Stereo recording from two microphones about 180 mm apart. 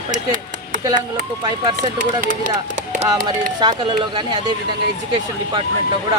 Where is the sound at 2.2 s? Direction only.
50° right (ahead or behind).